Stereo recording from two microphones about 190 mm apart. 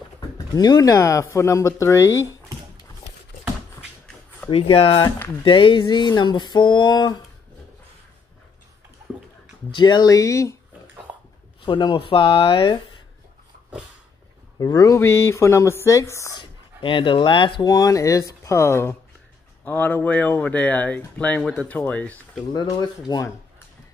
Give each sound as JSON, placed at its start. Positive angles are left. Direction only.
{"t": 0.6, "sound": "speech", "side_deg": 20}
{"t": 4.5, "sound": "speech", "side_deg": 30}
{"t": 9.1, "sound": "a sound", "side_deg": -5}
{"t": 9.7, "sound": "speech", "side_deg": 25}
{"t": 11.6, "sound": "speech", "side_deg": 25}
{"t": 14.6, "sound": "speech", "side_deg": 20}
{"t": 16.8, "sound": "speech", "side_deg": 25}
{"t": 22.5, "sound": "speech", "side_deg": 20}